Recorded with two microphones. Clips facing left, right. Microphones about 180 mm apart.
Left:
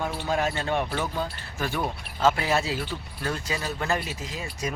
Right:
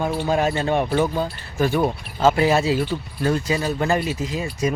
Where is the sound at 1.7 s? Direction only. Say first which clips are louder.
Right 8 dB; 35° right (ahead or behind).